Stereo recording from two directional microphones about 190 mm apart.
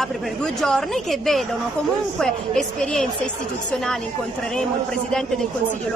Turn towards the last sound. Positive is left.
turn(degrees=5)  # may be behind; listen again after turning